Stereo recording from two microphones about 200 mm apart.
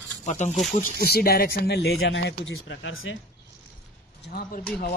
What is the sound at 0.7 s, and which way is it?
Speech, 50° left (ahead or behind).